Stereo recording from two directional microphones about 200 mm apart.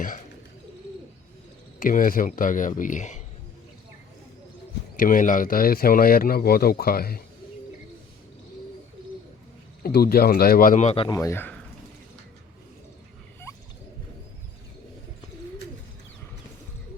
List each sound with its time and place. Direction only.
1.8 s a man's voice: 40° left (ahead or behind)
4.9 s speech: 45° left (ahead or behind)
9.8 s speech: 50° left (ahead or behind); by 11.5 s 10° left (ahead or behind)